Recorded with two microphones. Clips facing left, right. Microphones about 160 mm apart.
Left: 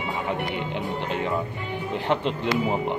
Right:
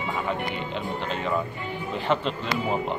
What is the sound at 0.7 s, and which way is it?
Speech, 15° left (ahead or behind).